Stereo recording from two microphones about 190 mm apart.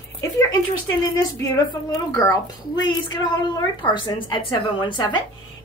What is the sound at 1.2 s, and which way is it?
A woman's voice, 20° left (ahead or behind).